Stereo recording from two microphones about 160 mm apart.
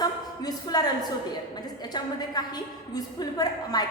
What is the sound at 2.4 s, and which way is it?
A woman's voice, 25° left (ahead or behind).